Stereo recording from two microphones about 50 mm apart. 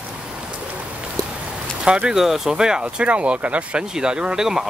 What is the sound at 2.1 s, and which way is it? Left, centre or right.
Speech, centre.